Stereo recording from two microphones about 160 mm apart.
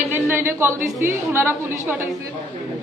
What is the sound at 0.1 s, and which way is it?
A woman's voice, 15° right (ahead or behind).